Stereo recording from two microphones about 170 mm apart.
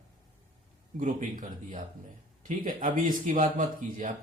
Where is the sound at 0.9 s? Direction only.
50° right (ahead or behind).